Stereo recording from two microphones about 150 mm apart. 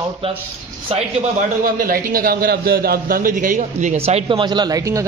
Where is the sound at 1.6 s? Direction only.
75° right (ahead or behind); by 5.0 s 20° right (ahead or behind).